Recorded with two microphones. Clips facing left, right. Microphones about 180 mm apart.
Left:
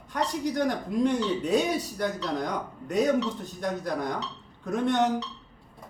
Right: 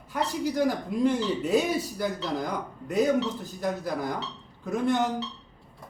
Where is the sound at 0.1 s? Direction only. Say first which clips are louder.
Even; 5° right (ahead or behind).